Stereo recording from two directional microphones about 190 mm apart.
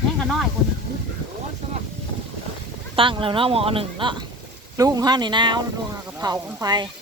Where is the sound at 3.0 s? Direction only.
25° right (ahead or behind).